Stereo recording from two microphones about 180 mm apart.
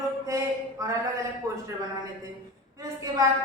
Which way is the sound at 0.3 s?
15° right (ahead or behind).